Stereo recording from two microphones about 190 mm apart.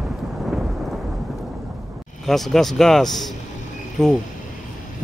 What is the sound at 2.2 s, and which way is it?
Speech, centre (ahead or behind).